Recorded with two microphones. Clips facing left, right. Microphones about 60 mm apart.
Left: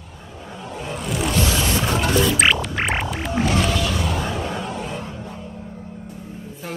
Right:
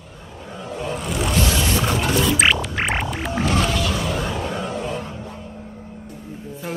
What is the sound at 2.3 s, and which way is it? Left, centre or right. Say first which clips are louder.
Music: even; centre.